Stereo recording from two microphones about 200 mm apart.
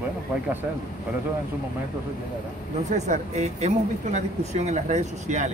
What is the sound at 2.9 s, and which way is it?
Speech, 35° right (ahead or behind).